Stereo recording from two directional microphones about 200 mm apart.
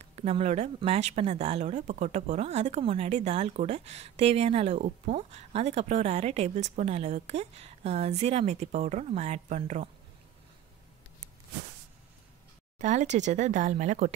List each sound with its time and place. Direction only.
0.0 s speech: 30° right (ahead or behind)
12.7 s speech: 35° right (ahead or behind)